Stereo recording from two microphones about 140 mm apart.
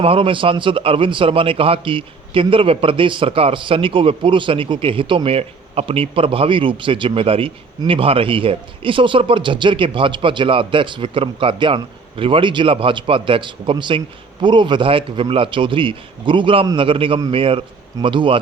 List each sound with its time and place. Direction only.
0.0 s a man's voice: 40° right (ahead or behind)